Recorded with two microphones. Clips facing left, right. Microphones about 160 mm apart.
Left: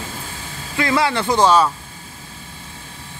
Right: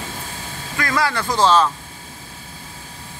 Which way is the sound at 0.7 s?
20° left (ahead or behind).